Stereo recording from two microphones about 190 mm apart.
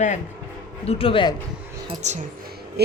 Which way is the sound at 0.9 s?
30° left (ahead or behind).